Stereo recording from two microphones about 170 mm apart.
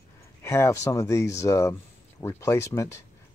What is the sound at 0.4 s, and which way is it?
Speech, 15° left (ahead or behind).